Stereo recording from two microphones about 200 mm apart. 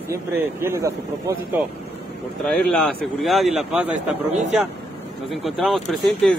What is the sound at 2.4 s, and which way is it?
A man's voice, centre (ahead or behind).